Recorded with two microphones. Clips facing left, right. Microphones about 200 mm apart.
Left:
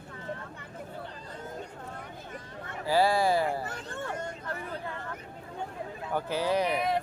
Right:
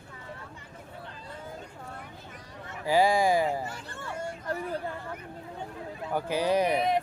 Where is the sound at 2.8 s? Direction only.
15° right (ahead or behind).